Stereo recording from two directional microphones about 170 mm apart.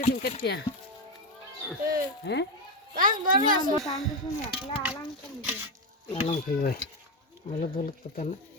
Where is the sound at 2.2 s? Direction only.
80° left.